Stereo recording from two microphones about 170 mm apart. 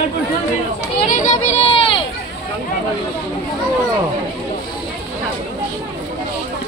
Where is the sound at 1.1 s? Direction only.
45° left (ahead or behind); by 2.0 s 30° left (ahead or behind).